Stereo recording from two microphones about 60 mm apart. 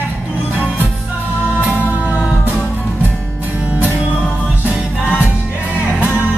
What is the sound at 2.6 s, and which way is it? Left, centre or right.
Music, left.